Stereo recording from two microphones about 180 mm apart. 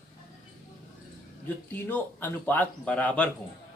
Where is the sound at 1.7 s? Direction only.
10° left (ahead or behind).